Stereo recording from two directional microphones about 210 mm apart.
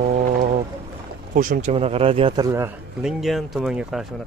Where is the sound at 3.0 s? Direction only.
Centre (ahead or behind).